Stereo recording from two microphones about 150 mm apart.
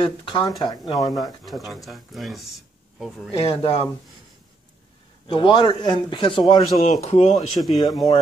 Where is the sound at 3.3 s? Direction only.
40° left (ahead or behind).